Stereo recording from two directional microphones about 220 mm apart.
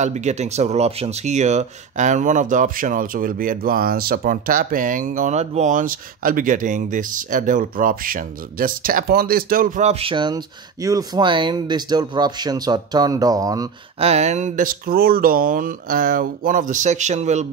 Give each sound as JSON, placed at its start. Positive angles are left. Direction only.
{"t": 0.0, "sound": "speech", "side_deg": -30}
{"t": 14.0, "sound": "speech", "side_deg": -30}